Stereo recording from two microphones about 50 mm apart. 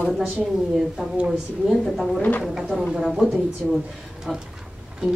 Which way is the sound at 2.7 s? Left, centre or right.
Centre.